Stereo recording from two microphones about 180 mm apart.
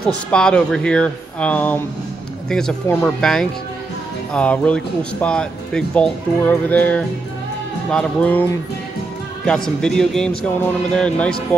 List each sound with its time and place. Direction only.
0.0 s speech: 5° left (ahead or behind)